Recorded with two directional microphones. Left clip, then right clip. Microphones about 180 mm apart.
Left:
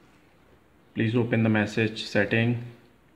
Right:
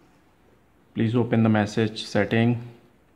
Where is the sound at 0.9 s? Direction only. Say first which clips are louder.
Right 2 dB; 40° right (ahead or behind).